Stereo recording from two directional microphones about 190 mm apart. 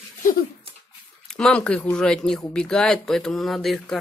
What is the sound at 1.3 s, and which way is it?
Speech, 5° left (ahead or behind).